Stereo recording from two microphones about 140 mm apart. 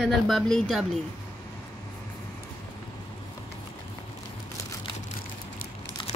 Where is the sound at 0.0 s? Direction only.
Centre (ahead or behind).